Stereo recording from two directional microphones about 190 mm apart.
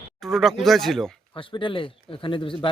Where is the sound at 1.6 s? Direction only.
25° left (ahead or behind).